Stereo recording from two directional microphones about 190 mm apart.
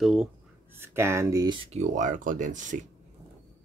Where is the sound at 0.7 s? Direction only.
15° right (ahead or behind); by 2.9 s 40° right (ahead or behind).